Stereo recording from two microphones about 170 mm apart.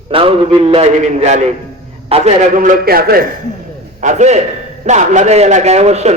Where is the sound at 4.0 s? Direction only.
45° right (ahead or behind).